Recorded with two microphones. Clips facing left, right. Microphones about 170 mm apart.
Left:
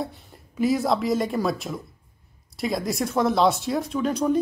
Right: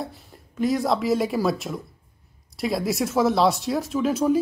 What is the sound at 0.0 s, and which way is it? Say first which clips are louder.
Speech: left 2 dB; centre (ahead or behind).